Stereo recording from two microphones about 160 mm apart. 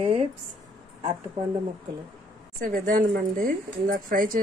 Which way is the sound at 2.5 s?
60° right (ahead or behind).